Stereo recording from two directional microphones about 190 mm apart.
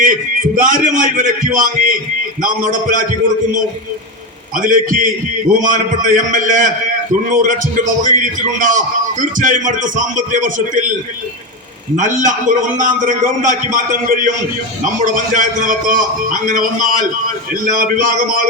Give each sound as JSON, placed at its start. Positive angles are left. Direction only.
{"t": 0.0, "sound": "a man's voice", "side_deg": -45}
{"t": 4.5, "sound": "a man's voice", "side_deg": -45}
{"t": 11.9, "sound": "a man's voice", "side_deg": -45}